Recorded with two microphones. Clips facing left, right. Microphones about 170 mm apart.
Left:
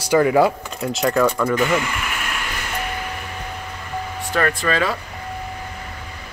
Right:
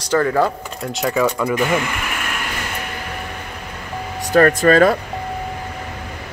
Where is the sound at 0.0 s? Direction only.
10° left (ahead or behind).